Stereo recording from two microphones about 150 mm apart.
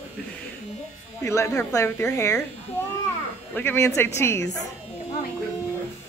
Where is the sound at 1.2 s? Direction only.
20° left (ahead or behind).